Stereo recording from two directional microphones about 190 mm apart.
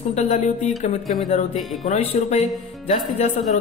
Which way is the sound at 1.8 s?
35° left (ahead or behind).